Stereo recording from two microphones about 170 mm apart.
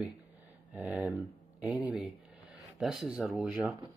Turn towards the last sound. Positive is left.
turn(degrees=0)  # may be behind; listen again after turning